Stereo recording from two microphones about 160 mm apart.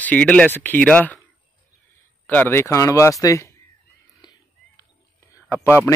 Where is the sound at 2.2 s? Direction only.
10° left (ahead or behind).